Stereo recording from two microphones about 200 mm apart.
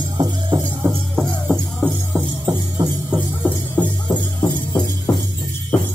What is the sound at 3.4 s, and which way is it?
Music, 10° left (ahead or behind).